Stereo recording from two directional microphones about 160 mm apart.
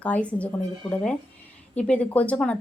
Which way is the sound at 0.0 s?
10° left (ahead or behind).